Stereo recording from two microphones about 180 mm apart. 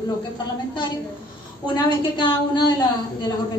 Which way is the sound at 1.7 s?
25° left (ahead or behind).